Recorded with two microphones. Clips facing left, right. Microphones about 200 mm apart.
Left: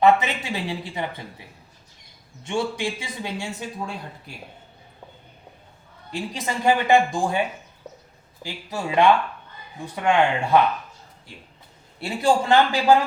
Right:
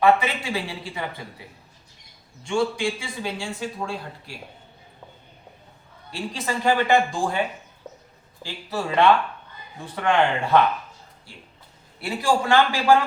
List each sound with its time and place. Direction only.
0.0 s speech: 20° left (ahead or behind)
2.4 s speech: 20° left (ahead or behind)
6.1 s speech: 20° left (ahead or behind)
8.4 s speech: 15° left (ahead or behind)